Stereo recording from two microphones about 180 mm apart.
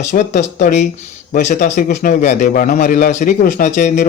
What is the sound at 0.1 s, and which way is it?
A man's voice, 40° left (ahead or behind).